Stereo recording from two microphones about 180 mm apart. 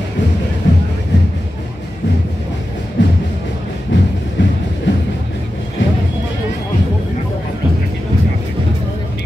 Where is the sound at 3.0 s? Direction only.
90° left.